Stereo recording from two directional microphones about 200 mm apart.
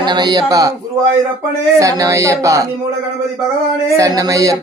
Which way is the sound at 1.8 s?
15° right (ahead or behind).